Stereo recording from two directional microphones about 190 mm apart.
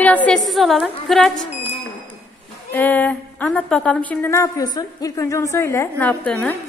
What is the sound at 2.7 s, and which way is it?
Speech, 10° left (ahead or behind).